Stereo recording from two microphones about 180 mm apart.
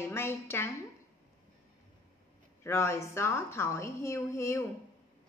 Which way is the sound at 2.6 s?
15° left (ahead or behind).